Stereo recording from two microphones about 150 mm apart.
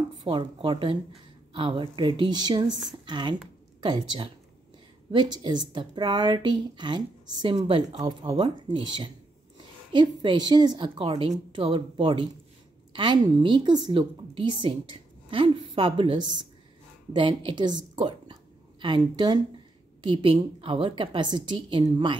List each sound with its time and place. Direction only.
0.2 s a woman's voice: 35° right (ahead or behind)
17.9 s a sound: 30° right (ahead or behind)
20.0 s a woman's voice: 35° right (ahead or behind)